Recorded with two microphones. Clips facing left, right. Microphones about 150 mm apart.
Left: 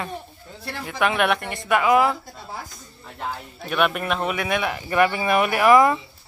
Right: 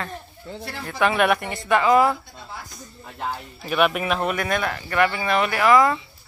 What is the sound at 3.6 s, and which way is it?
Speech, centre (ahead or behind).